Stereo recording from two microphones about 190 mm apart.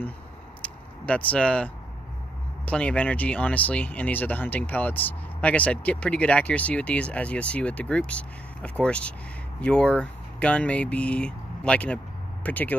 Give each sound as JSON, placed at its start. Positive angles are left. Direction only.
{"t": 0.6, "sound": "vehicle", "side_deg": 5}
{"t": 2.6, "sound": "speech", "side_deg": 5}